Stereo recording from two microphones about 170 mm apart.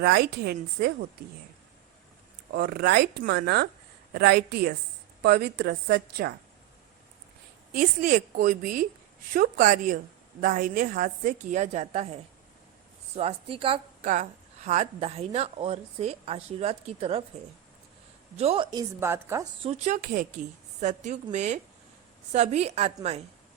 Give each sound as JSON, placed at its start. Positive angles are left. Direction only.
{"t": 0.0, "sound": "speech", "side_deg": -70}
{"t": 2.5, "sound": "speech", "side_deg": -65}
{"t": 7.8, "sound": "a woman's voice", "side_deg": -55}
{"t": 14.0, "sound": "speech", "side_deg": -45}
{"t": 18.3, "sound": "speech", "side_deg": -35}
{"t": 18.9, "sound": "a woman's voice", "side_deg": -15}
{"t": 19.6, "sound": "a woman's voice", "side_deg": -40}